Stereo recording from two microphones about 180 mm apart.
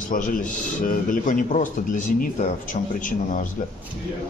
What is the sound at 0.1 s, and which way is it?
A man's voice, 50° left (ahead or behind).